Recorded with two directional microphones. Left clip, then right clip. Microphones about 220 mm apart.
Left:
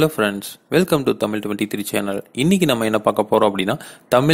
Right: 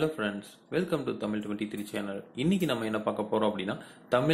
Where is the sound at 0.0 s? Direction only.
45° left (ahead or behind).